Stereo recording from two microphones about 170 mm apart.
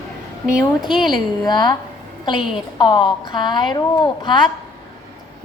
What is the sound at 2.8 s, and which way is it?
A woman's voice, 25° left (ahead or behind).